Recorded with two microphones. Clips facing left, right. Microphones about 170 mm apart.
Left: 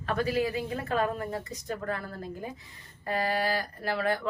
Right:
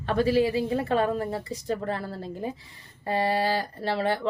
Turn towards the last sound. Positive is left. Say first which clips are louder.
# right 3 dB
turn(degrees=-30)  # may be behind; listen again after turning